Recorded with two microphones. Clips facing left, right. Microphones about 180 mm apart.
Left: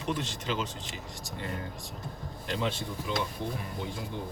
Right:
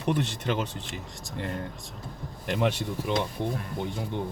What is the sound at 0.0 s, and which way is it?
Speech, 60° right (ahead or behind).